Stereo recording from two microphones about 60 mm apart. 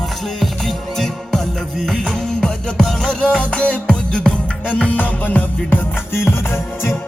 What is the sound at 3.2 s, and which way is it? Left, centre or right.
Music, centre.